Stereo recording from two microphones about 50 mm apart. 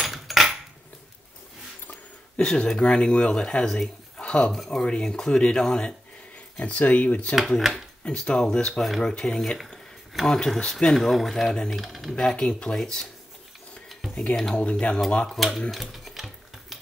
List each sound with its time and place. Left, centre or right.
0.0 s cutlery: centre
2.3 s speech: centre
3.6 s speech: centre
4.6 s speech: centre
6.6 s speech: left
7.3 s speech: centre
8.0 s speech: centre
11.0 s speech: centre
12.2 s speech: centre
14.3 s speech: centre
14.6 s speech: left
15.2 s speech: centre
15.7 s a sound: centre